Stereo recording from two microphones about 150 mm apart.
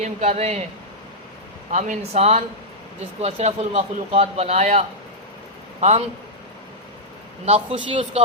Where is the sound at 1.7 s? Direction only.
55° right (ahead or behind).